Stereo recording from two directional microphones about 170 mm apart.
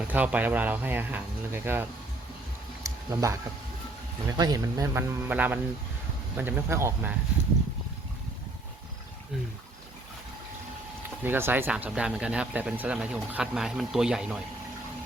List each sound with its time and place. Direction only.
0.0 s speech: 10° right (ahead or behind)
2.8 s a sound: 20° right (ahead or behind)
4.3 s speech: 20° right (ahead or behind)
11.2 s speech: 10° right (ahead or behind)